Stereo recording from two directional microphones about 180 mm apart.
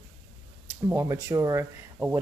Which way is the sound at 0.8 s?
15° right (ahead or behind).